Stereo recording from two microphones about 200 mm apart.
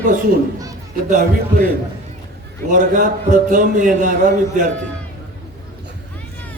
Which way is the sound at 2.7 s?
40° right (ahead or behind).